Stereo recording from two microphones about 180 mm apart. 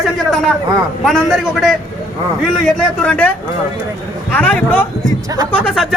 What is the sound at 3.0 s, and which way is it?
Speech, 5° left (ahead or behind).